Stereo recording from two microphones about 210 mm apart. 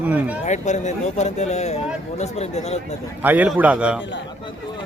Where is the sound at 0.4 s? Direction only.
35° left (ahead or behind).